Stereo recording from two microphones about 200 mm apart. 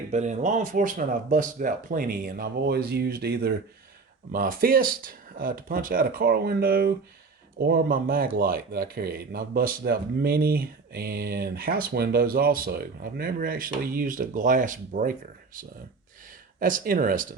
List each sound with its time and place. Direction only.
0.1 s speech: 35° right (ahead or behind)
16.6 s speech: 45° right (ahead or behind)